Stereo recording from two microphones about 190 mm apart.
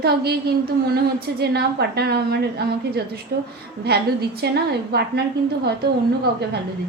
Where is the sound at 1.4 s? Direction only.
60° right (ahead or behind).